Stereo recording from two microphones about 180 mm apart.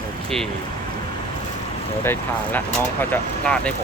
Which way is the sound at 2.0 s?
10° left (ahead or behind).